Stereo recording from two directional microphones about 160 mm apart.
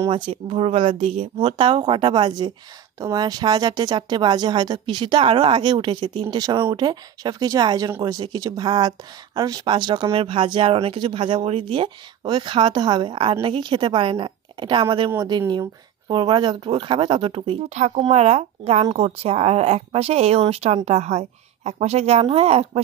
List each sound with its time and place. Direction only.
0.1 s speech: 35° right (ahead or behind)